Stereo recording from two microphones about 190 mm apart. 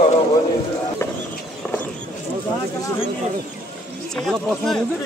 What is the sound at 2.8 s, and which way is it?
Speech, 15° left (ahead or behind).